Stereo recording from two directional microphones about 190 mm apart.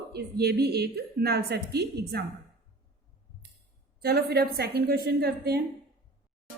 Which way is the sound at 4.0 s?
55° right (ahead or behind).